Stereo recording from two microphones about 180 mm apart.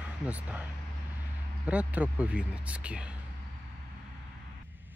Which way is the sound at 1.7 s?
5° right (ahead or behind).